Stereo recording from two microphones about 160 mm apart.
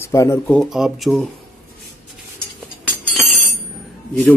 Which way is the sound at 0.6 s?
5° right (ahead or behind).